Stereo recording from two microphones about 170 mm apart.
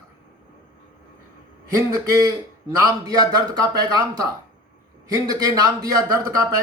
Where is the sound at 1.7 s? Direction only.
20° right (ahead or behind).